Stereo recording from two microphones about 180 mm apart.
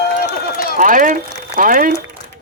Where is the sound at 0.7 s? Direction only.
45° right (ahead or behind).